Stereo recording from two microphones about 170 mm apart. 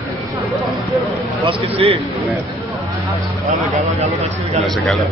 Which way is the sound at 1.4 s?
35° right (ahead or behind).